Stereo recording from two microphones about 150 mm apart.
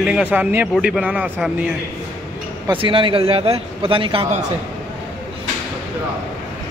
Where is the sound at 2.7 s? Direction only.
35° right (ahead or behind).